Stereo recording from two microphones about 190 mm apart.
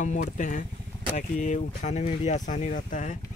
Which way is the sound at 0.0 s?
40° left (ahead or behind).